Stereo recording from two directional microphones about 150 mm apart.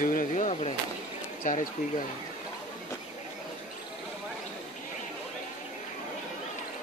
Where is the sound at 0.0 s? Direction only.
60° left (ahead or behind); by 0.7 s 45° left (ahead or behind).